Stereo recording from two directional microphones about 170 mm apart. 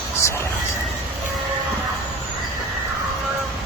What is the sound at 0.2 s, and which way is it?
Speech, 15° left (ahead or behind).